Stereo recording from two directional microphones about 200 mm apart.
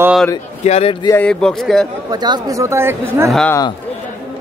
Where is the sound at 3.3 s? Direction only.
5° left (ahead or behind).